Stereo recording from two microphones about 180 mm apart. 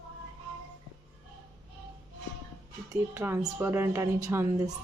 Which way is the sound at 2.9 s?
15° right (ahead or behind).